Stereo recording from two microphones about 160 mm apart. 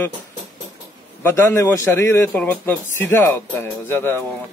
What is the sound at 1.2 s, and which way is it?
Speech, 15° left (ahead or behind).